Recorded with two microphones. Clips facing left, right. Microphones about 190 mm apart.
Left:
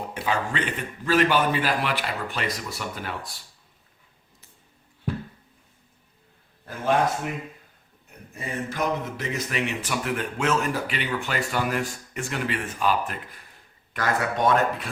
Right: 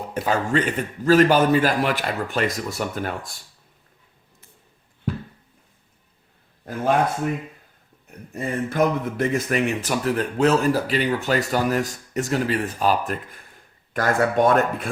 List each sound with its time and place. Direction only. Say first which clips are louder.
0.1 s a man's voice: right 7 dB; 40° right (ahead or behind)
8.3 s a man's voice: right 6 dB; 50° right (ahead or behind)